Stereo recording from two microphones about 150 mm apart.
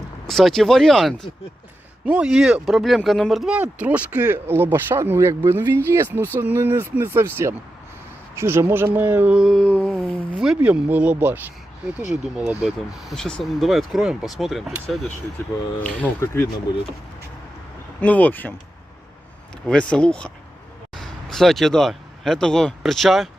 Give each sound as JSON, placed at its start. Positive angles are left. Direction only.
{"t": 0.3, "sound": "speech", "side_deg": 0}
{"t": 18.0, "sound": "speech", "side_deg": 10}
{"t": 19.9, "sound": "speech", "side_deg": 5}